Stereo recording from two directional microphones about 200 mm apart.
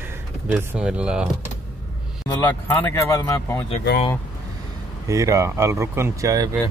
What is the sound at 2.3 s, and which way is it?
Speech, 10° left (ahead or behind).